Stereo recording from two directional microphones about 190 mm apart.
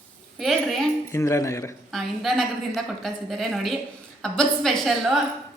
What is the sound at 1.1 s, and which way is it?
Speech, 15° left (ahead or behind).